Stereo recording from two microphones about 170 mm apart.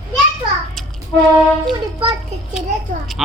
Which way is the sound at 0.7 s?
Centre (ahead or behind).